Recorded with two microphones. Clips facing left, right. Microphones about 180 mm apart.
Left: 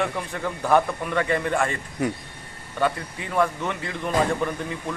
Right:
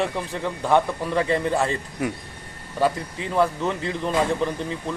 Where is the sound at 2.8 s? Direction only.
30° right (ahead or behind).